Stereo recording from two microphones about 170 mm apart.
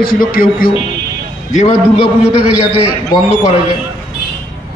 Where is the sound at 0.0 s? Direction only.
60° left (ahead or behind).